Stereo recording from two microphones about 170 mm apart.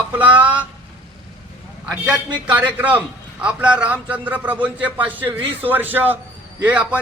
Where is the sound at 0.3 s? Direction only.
10° right (ahead or behind).